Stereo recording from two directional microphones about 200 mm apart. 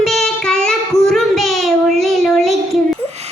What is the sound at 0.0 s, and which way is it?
Child singing, centre (ahead or behind).